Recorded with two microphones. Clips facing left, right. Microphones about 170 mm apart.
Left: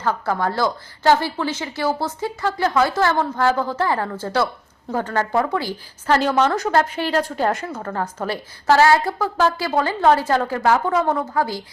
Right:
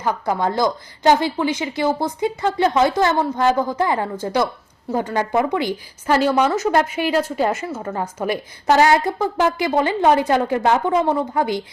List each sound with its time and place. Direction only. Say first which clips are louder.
0.0 s a woman's voice: right 1 dB; 15° right (ahead or behind)